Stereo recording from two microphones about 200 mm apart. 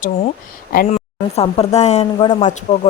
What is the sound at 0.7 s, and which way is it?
Speech, 45° left (ahead or behind).